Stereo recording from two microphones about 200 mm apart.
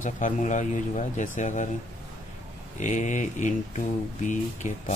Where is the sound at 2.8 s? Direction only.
35° left (ahead or behind).